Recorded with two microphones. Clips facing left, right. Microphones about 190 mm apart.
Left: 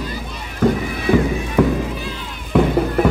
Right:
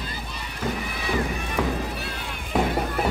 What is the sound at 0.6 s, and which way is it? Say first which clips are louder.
Music: left 12 dB; 55° left (ahead or behind).